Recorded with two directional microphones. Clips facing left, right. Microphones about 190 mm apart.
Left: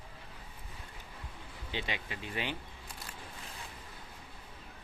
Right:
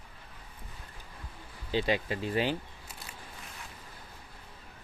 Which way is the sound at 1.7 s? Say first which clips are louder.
Right 10 dB; 40° right (ahead or behind).